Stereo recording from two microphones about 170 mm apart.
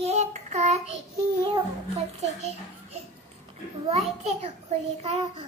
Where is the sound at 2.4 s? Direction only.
40° right (ahead or behind).